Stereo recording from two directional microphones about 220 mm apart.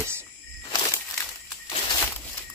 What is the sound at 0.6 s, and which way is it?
Walk, 15° left (ahead or behind).